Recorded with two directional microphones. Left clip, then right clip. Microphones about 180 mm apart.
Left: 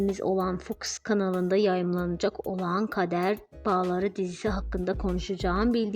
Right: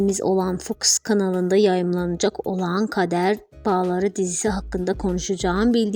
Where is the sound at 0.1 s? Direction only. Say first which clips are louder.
Right 6 dB; 30° right (ahead or behind).